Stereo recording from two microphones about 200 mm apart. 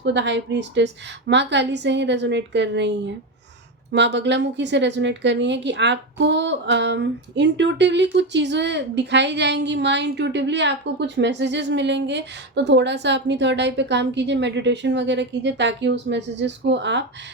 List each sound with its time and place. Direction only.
0.0 s a woman's voice: 60° right (ahead or behind)
3.9 s a woman's voice: 60° right (ahead or behind)